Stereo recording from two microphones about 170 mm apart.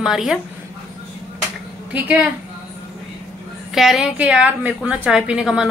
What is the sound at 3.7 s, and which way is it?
A woman's voice, centre (ahead or behind).